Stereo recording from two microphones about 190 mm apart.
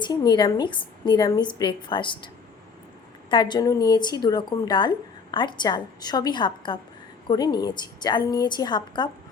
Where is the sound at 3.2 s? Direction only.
25° left (ahead or behind).